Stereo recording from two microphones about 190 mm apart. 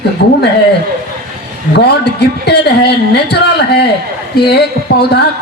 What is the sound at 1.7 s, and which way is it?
A woman's voice, 60° left (ahead or behind).